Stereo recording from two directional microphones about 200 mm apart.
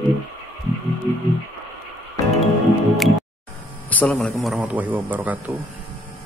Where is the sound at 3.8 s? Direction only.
5° left (ahead or behind).